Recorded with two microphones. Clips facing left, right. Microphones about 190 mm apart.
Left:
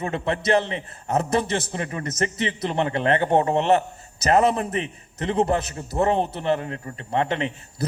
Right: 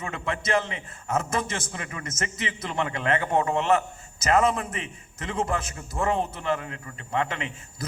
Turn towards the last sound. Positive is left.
turn(degrees=35)  # may be behind; listen again after turning